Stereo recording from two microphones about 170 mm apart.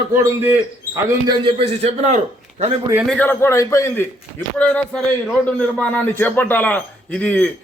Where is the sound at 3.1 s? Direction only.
10° left (ahead or behind).